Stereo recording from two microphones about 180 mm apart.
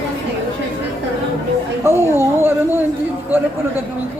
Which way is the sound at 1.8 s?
15° right (ahead or behind).